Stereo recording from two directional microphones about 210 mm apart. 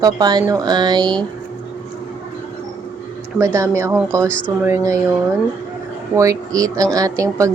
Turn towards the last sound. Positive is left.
turn(degrees=-15)  # may be behind; listen again after turning